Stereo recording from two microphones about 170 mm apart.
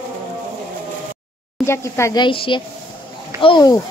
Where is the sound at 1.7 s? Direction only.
15° left (ahead or behind).